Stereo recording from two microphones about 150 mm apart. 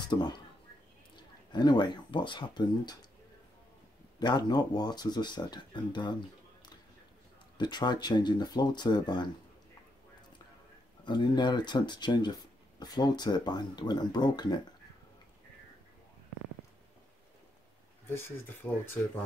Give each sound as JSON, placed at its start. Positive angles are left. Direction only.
{"t": 0.1, "sound": "speech", "side_deg": 30}
{"t": 4.2, "sound": "speech", "side_deg": 30}
{"t": 7.5, "sound": "speech", "side_deg": 30}
{"t": 11.1, "sound": "speech", "side_deg": 30}